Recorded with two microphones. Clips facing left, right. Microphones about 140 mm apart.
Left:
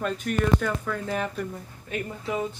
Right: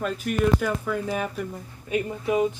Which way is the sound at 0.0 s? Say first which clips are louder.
Right 2 dB; 5° right (ahead or behind).